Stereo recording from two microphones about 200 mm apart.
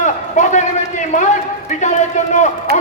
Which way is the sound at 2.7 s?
50° right (ahead or behind).